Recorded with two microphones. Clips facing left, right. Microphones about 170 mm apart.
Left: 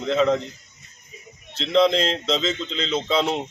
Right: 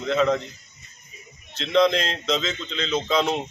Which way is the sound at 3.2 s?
Centre (ahead or behind).